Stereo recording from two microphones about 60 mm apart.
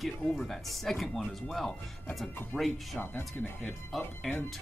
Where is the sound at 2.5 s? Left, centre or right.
Centre.